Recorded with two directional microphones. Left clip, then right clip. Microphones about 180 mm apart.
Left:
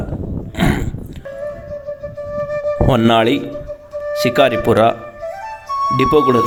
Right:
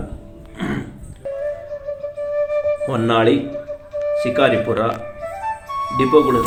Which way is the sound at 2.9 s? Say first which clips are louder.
Left 4 dB; 60° left (ahead or behind).